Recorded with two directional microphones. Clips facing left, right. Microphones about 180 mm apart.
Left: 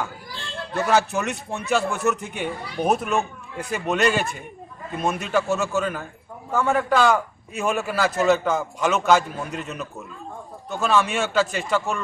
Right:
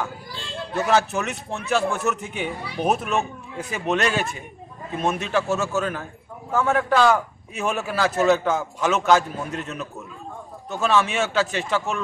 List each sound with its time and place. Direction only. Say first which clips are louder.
0.7 s a man's voice: even; centre (ahead or behind)